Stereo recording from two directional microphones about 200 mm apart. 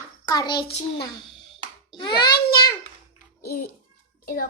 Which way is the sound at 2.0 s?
20° left (ahead or behind).